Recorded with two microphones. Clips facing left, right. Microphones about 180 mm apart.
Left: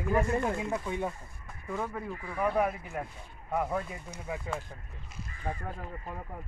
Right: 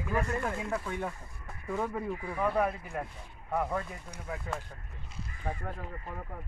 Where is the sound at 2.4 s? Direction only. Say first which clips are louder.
Left 1 dB; 10° left (ahead or behind).